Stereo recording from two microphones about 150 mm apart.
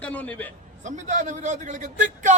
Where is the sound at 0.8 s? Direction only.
55° right (ahead or behind).